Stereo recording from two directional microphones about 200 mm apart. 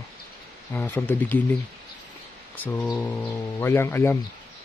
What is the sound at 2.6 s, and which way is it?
Speech, 10° left (ahead or behind).